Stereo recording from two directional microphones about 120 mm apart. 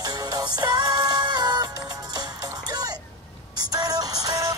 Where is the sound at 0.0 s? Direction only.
35° right (ahead or behind).